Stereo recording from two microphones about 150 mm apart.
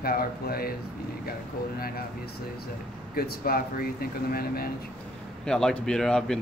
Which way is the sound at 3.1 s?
80° left.